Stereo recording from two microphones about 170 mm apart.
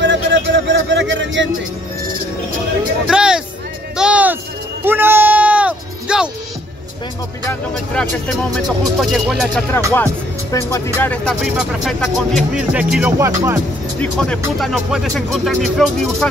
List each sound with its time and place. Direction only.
0.0 s speech: 90° right
3.1 s speech: 5° right (ahead or behind)
3.9 s a sound: 5° right (ahead or behind)
4.8 s music: 10° right (ahead or behind)
7.7 s speech: 5° left (ahead or behind)
10.5 s speech: 15° left (ahead or behind); by 13.6 s 15° right (ahead or behind)
14.1 s speech: 5° left (ahead or behind)